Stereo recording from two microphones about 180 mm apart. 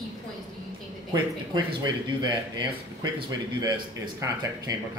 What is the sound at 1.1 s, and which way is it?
Speech, 25° right (ahead or behind).